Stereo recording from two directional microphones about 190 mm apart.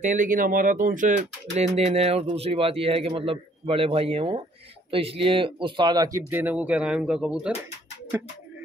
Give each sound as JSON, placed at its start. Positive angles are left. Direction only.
{"t": 0.0, "sound": "speech", "side_deg": -45}